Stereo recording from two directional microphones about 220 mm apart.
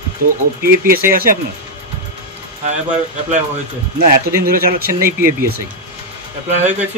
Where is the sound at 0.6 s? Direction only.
40° right (ahead or behind).